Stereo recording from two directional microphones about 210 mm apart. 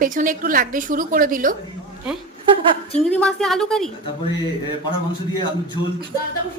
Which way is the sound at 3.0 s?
5° left (ahead or behind).